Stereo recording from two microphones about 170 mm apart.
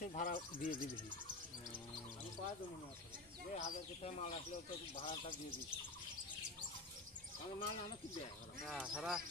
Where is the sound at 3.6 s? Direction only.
40° left (ahead or behind).